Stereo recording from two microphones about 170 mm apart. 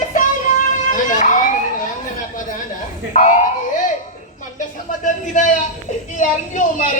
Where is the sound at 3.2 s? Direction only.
50° left (ahead or behind).